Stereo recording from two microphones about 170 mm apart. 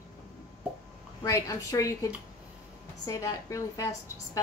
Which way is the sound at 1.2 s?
20° left (ahead or behind).